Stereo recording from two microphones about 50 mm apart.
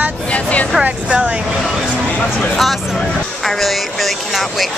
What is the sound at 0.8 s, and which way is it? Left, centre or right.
Speech, right.